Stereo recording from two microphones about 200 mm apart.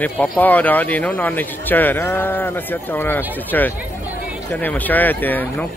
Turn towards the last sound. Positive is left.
turn(degrees=10)  # may be behind; listen again after turning